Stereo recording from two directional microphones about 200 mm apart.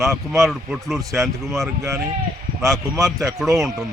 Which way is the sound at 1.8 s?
15° right (ahead or behind).